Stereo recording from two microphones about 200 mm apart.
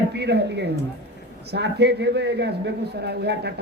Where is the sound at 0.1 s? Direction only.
55° right (ahead or behind).